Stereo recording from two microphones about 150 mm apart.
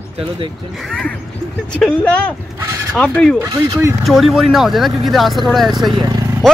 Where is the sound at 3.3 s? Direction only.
20° right (ahead or behind).